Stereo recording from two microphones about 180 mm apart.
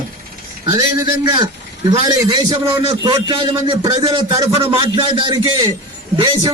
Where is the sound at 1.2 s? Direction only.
25° right (ahead or behind).